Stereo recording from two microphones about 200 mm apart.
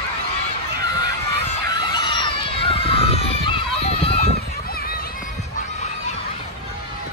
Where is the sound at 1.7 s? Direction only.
20° left (ahead or behind).